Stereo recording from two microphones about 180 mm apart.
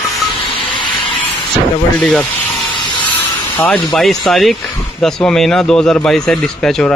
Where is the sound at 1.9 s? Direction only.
5° left (ahead or behind).